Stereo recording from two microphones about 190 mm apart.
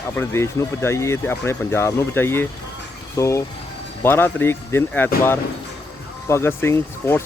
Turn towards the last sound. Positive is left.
turn(degrees=10)  # may be behind; listen again after turning